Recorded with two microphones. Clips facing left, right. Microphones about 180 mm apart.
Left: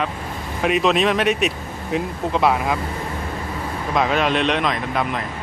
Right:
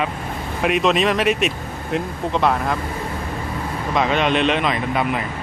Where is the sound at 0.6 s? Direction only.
Centre (ahead or behind).